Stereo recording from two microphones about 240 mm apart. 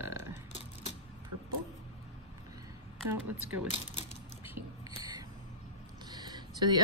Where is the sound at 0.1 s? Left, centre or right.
Centre.